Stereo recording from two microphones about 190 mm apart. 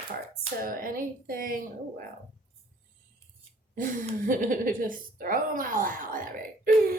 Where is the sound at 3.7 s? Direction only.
45° right (ahead or behind).